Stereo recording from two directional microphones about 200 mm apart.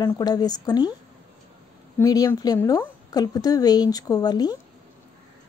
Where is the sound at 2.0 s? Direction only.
15° left (ahead or behind).